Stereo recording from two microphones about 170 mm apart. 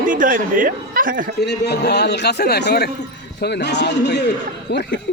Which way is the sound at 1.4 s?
80° left.